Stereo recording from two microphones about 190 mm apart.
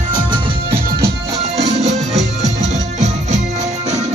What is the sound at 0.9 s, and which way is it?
Music, 55° right (ahead or behind).